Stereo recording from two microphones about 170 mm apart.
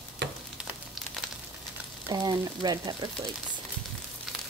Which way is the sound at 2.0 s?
25° right (ahead or behind).